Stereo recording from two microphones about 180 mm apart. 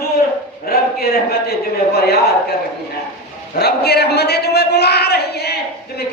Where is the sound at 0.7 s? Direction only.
60° left (ahead or behind).